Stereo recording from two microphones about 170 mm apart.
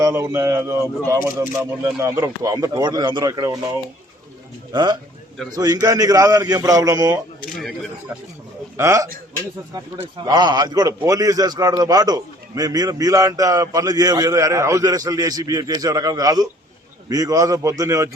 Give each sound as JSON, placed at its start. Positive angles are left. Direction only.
{"t": 0.0, "sound": "a man's voice", "side_deg": -15}
{"t": 4.7, "sound": "a man's voice", "side_deg": -25}
{"t": 8.8, "sound": "a man's voice", "side_deg": -20}